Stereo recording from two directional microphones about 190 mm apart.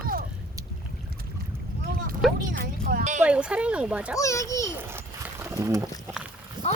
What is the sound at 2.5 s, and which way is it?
Speech, 50° right (ahead or behind).